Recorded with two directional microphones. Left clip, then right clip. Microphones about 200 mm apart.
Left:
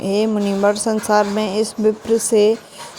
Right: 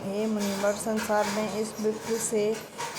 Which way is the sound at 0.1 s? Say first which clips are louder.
Left 11 dB; 50° left (ahead or behind).